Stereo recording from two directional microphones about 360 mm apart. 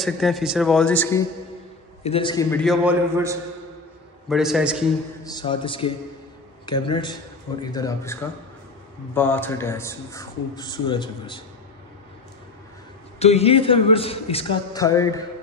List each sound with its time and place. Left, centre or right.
0.0 s a man's voice: centre
2.0 s a man's voice: centre
5.2 s speech: centre
13.2 s speech: centre